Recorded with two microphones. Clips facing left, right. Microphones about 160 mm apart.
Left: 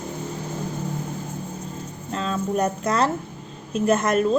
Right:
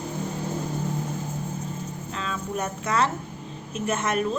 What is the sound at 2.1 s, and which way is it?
A woman's voice, 35° left (ahead or behind).